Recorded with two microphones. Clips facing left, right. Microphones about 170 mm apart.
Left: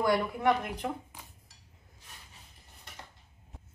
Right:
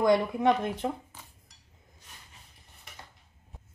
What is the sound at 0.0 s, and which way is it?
Speech, 20° right (ahead or behind).